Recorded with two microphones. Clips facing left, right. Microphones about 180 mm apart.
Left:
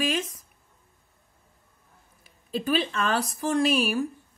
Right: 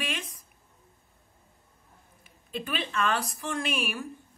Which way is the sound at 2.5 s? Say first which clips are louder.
Left 8 dB; 35° left (ahead or behind).